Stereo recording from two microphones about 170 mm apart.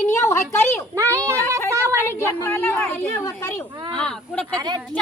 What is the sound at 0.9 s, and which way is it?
Speech, 15° right (ahead or behind).